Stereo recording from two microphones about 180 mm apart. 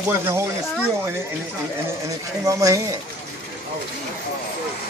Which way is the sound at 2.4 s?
20° right (ahead or behind).